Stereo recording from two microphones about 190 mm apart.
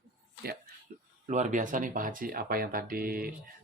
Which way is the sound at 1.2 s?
40° right (ahead or behind).